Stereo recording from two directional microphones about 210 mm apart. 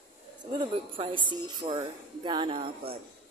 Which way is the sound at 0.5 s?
25° right (ahead or behind).